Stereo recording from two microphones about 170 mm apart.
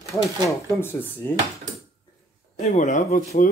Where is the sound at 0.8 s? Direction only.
15° left (ahead or behind).